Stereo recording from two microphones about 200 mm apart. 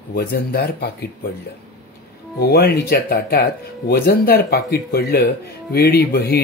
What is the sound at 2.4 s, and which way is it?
Speech, 55° left (ahead or behind).